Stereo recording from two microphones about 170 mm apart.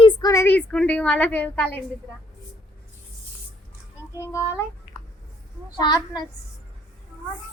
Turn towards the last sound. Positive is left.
turn(degrees=25)  # may be behind; listen again after turning